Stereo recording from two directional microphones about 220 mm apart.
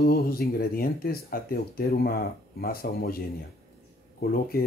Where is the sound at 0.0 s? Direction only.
45° left (ahead or behind).